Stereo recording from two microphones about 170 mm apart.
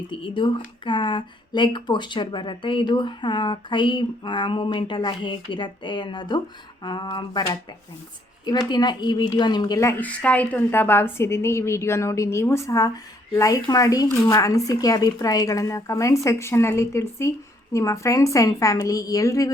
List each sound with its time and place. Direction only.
0.1 s speech: 30° left (ahead or behind)
10.0 s a woman's voice: 10° left (ahead or behind)